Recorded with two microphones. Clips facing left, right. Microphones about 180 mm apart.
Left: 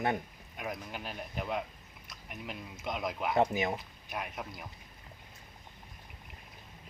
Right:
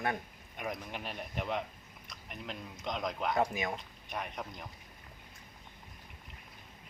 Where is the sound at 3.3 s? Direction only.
25° left (ahead or behind).